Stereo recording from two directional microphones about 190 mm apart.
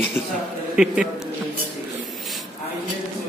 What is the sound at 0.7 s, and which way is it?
Speech, 5° right (ahead or behind).